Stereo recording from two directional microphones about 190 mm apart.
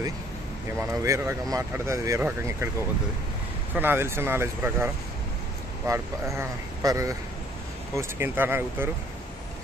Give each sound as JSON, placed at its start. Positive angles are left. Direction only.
{"t": 0.7, "sound": "speech", "side_deg": -15}
{"t": 3.7, "sound": "speech", "side_deg": -10}